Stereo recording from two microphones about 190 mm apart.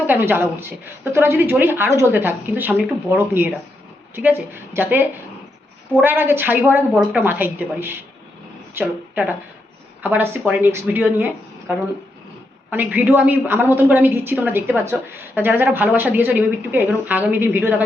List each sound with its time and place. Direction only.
0.1 s a woman's voice: 10° right (ahead or behind)
6.9 s a woman's voice: centre (ahead or behind)
12.7 s a woman's voice: 10° right (ahead or behind)